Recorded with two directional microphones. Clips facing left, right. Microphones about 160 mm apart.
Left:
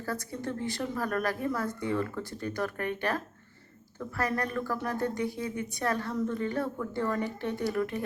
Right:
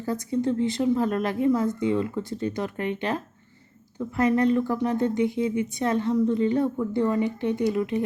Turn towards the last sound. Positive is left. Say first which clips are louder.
# right 6 dB
turn(degrees=-20)  # may be behind; listen again after turning